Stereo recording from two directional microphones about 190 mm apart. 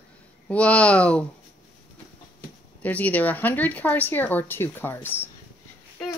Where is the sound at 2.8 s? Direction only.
10° left (ahead or behind).